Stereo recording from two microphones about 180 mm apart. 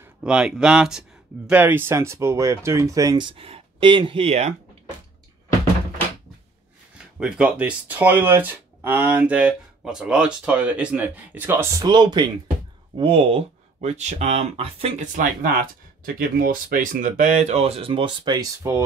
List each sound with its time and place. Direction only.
0.0 s speech: 5° right (ahead or behind); by 4.6 s 35° right (ahead or behind)
7.2 s speech: 5° right (ahead or behind); by 15.0 s 35° right (ahead or behind)
15.1 s speech: 50° right (ahead or behind); by 18.8 s 15° right (ahead or behind)